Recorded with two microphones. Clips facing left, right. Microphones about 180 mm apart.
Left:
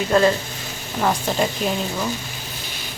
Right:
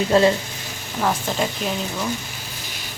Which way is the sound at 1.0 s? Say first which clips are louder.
Left 1 dB; 5° right (ahead or behind).